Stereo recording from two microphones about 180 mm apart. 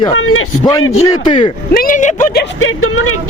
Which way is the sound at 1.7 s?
50° left (ahead or behind).